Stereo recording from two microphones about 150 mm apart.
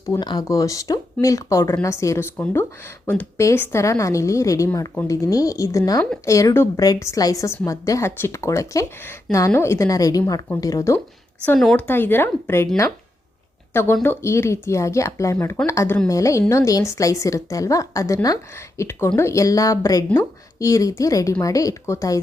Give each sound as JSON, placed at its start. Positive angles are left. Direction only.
{"t": 0.1, "sound": "speech", "side_deg": 25}
{"t": 11.4, "sound": "speech", "side_deg": 5}